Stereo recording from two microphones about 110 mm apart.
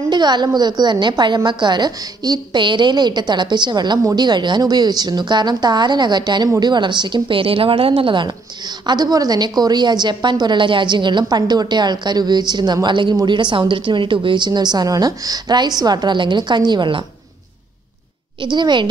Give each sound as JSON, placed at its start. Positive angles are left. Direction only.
{"t": 0.1, "sound": "a woman's voice", "side_deg": -40}
{"t": 18.4, "sound": "a woman's voice", "side_deg": -45}